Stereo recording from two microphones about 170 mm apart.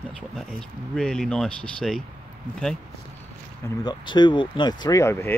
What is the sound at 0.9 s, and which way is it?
Speech, centre (ahead or behind).